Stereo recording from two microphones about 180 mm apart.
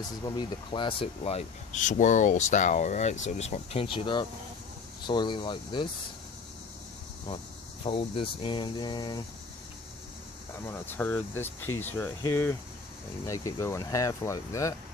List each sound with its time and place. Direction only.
0.2 s speech: 25° left (ahead or behind)
7.8 s speech: 30° left (ahead or behind)
10.6 s speech: 10° left (ahead or behind)